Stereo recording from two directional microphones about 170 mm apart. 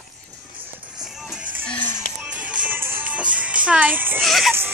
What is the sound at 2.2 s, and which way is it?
Music, 5° right (ahead or behind).